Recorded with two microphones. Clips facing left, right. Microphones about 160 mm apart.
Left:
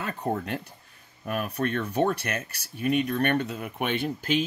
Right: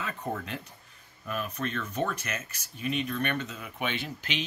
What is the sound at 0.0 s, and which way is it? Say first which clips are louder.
Speech: left 5 dB; 55° left (ahead or behind).